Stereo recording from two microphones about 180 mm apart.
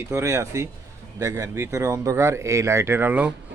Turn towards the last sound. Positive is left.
turn(degrees=-10)  # may be behind; listen again after turning